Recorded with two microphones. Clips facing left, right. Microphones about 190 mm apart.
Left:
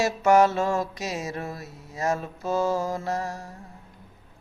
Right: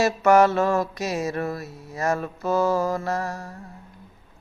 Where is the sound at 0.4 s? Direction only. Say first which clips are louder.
Right 3 dB; 65° right (ahead or behind).